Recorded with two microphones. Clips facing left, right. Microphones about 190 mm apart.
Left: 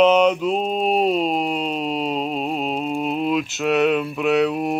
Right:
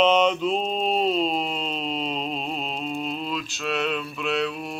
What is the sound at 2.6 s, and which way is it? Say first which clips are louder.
Mantra: left 6 dB; 50° left (ahead or behind).